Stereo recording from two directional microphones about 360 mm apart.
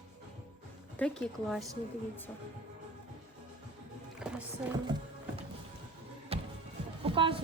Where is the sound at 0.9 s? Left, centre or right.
Centre.